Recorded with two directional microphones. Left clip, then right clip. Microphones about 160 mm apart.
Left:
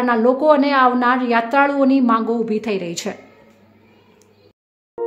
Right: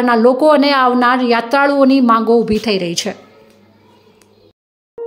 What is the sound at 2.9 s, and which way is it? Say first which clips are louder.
Speech: right 6 dB; 10° right (ahead or behind).